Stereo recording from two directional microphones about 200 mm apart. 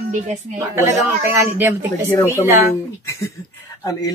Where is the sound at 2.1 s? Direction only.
15° left (ahead or behind).